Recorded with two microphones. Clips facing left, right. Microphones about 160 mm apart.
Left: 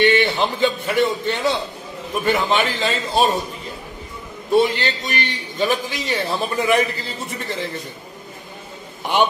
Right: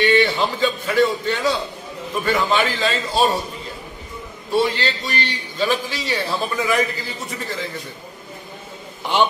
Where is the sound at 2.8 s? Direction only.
20° left (ahead or behind).